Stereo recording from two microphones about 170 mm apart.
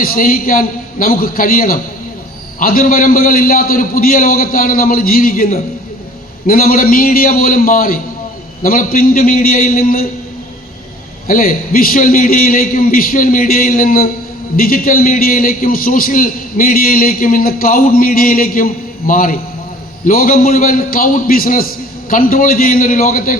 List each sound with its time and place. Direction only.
0.0 s a man's voice: 55° left (ahead or behind)
11.3 s a man's voice: 55° left (ahead or behind)